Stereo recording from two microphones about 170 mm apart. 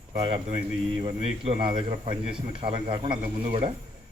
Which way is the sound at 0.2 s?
35° right (ahead or behind).